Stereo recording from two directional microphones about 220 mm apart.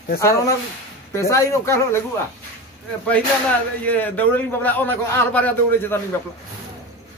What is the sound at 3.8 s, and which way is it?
A man's voice, 5° left (ahead or behind).